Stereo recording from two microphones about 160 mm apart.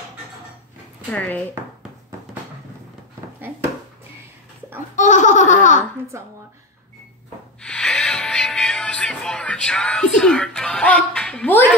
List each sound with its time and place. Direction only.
1.1 s speech: 10° left (ahead or behind)
3.3 s speech: 10° right (ahead or behind)
4.9 s laughter: 50° left (ahead or behind)
6.1 s speech: 15° right (ahead or behind)
7.6 s music: 5° left (ahead or behind)